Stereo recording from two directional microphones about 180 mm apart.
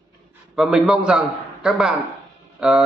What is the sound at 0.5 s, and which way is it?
A man's voice, 5° right (ahead or behind).